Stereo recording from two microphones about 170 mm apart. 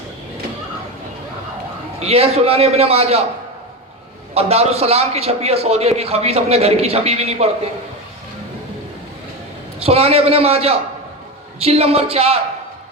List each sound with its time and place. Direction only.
2.0 s a man's voice: 35° right (ahead or behind)
4.4 s a man's voice: 35° right (ahead or behind)
9.8 s a man's voice: 35° right (ahead or behind)